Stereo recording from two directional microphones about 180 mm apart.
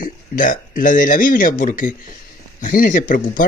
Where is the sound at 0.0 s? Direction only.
50° left (ahead or behind).